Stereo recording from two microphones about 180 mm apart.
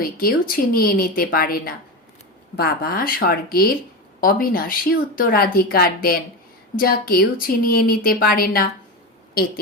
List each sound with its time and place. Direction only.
0.0 s a woman's voice: 55° left (ahead or behind)